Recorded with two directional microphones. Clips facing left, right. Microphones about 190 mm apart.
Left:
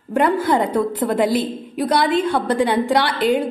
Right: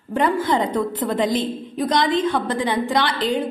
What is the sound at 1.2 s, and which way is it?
A woman's voice, 10° left (ahead or behind).